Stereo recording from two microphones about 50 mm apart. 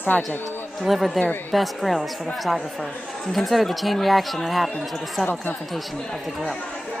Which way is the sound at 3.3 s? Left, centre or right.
Centre.